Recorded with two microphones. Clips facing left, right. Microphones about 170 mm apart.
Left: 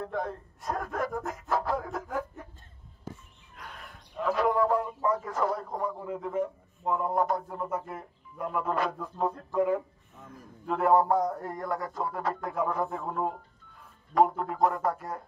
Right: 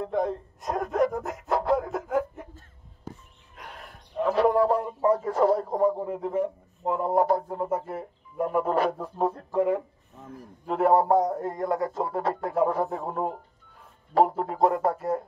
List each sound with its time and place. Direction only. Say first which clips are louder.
0.0 s a man's voice: right 6 dB; 20° right (ahead or behind)
1.5 s dog: right 5 dB; 25° right (ahead or behind)
4.3 s speech: right 4 dB; 30° right (ahead or behind)
10.7 s a man's voice: right 3 dB; 25° right (ahead or behind)
14.1 s a man's voice: right 2 dB; 30° right (ahead or behind)